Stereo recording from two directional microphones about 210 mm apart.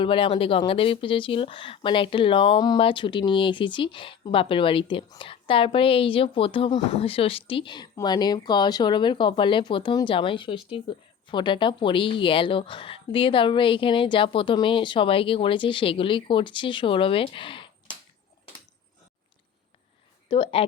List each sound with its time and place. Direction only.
0.0 s speech: 25° left (ahead or behind)
20.2 s a woman's voice: 25° left (ahead or behind)